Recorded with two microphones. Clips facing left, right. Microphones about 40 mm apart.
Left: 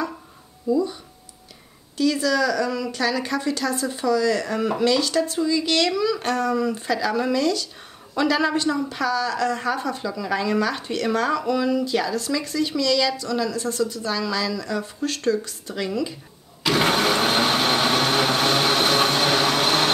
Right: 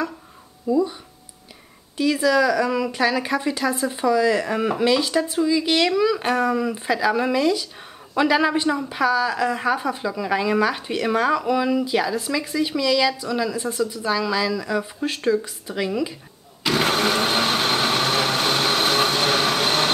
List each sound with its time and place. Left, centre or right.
0.7 s speech: centre
2.0 s speech: centre
16.6 s blender: centre